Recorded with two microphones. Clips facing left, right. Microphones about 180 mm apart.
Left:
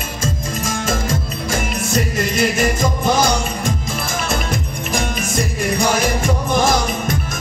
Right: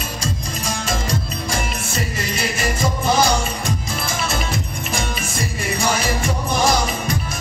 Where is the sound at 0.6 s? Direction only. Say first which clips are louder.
Left 3 dB; 45° left (ahead or behind).